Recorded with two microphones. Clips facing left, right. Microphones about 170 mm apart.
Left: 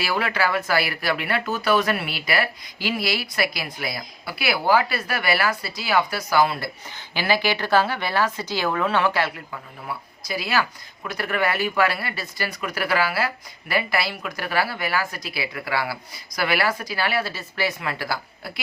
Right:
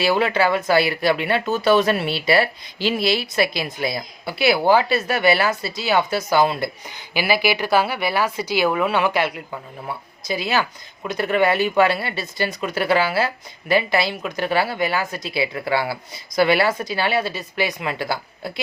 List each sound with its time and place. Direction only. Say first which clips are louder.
0.0 s speech: right 6 dB; 25° right (ahead or behind)